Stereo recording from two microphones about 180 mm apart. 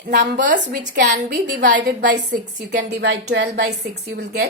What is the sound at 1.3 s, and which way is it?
A woman's voice, 70° right (ahead or behind).